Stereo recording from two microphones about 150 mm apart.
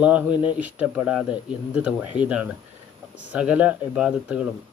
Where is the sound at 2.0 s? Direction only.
30° left (ahead or behind).